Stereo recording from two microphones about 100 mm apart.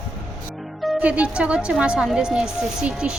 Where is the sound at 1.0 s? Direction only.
15° right (ahead or behind).